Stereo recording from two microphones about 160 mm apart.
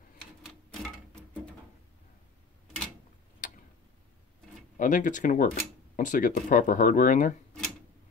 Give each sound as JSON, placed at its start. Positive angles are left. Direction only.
{"t": 3.4, "sound": "tick-tock", "side_deg": 55}
{"t": 4.7, "sound": "speech", "side_deg": 55}